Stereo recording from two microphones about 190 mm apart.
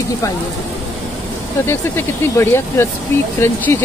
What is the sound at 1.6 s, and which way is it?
Speech, 10° left (ahead or behind).